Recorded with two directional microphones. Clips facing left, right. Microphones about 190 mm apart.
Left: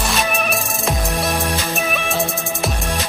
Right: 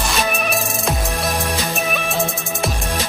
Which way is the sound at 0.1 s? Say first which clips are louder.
Even; centre (ahead or behind).